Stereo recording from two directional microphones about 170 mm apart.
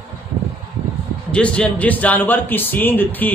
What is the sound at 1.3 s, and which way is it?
A man's voice, 5° left (ahead or behind).